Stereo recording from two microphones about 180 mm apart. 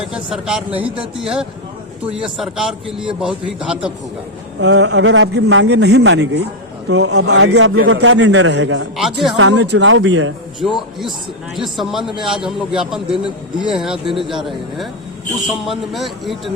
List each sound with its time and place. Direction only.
0.0 s a man's voice: 5° right (ahead or behind)
4.6 s a man's voice: 75° right (ahead or behind); by 8.9 s 90° right
9.0 s a man's voice: centre (ahead or behind)
9.4 s a man's voice: 80° right
11.5 s a man's voice: centre (ahead or behind)
14.2 s speech: 25° right (ahead or behind)
15.6 s a man's voice: centre (ahead or behind)